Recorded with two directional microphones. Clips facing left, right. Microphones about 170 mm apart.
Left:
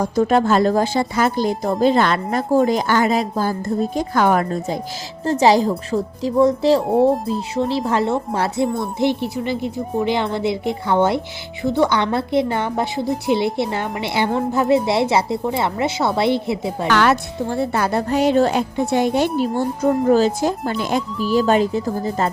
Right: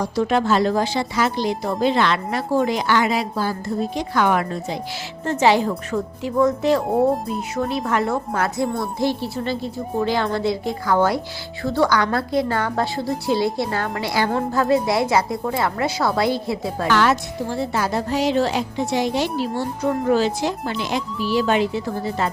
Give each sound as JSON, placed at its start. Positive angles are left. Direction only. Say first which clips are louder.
{"t": 0.0, "sound": "a woman's voice", "louder": "left 3 dB", "side_deg": 45}
{"t": 6.8, "sound": "a child's voice", "louder": "left 3 dB", "side_deg": 0}
{"t": 7.3, "sound": "a woman's voice", "louder": "left 3 dB", "side_deg": 30}
{"t": 16.9, "sound": "speech", "louder": "left 2 dB", "side_deg": 65}